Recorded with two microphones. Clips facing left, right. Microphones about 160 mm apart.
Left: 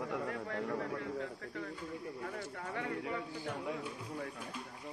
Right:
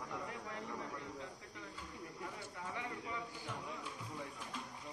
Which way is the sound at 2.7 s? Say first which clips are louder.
Left 7 dB; 60° left (ahead or behind).